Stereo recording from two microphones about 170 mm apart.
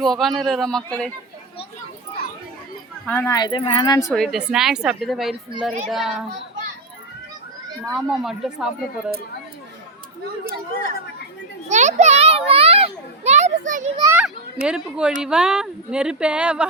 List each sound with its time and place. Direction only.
0.0 s speech: centre (ahead or behind)
3.1 s speech: 15° left (ahead or behind)
3.3 s speech: 25° left (ahead or behind)
4.1 s speech: centre (ahead or behind)
7.9 s speech: centre (ahead or behind)
11.7 s a child's voice: 45° right (ahead or behind)
14.0 s a child's voice: 15° right (ahead or behind)
14.3 s speech: 5° right (ahead or behind)